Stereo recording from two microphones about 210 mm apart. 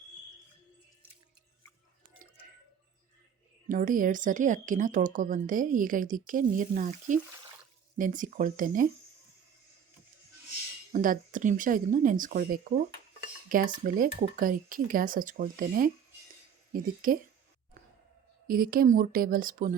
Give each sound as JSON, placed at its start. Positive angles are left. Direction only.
{"t": 3.7, "sound": "speech", "side_deg": -40}
{"t": 10.9, "sound": "speech", "side_deg": -40}
{"t": 18.4, "sound": "speech", "side_deg": -45}